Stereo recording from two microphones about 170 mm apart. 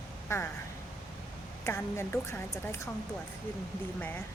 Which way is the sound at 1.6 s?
15° left (ahead or behind).